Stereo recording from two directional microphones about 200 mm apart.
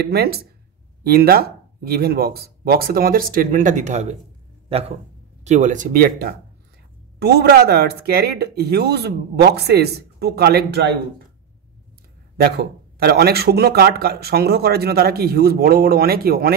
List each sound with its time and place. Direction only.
0.1 s speech: 50° right (ahead or behind)
12.4 s speech: 55° right (ahead or behind)